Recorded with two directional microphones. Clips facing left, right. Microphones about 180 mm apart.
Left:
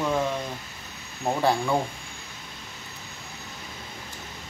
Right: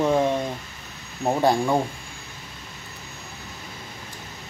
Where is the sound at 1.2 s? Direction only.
15° right (ahead or behind).